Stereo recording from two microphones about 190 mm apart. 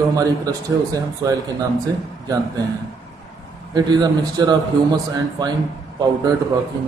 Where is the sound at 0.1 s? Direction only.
20° right (ahead or behind).